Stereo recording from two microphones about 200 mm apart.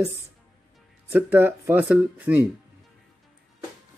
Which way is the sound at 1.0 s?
10° right (ahead or behind).